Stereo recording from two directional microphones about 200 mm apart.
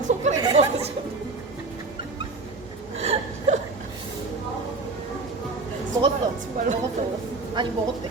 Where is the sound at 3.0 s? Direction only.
35° right (ahead or behind).